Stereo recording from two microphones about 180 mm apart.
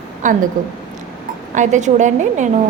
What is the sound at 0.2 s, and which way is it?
Speech, 45° right (ahead or behind).